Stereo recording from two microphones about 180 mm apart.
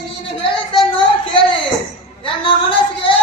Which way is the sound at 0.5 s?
30° left (ahead or behind).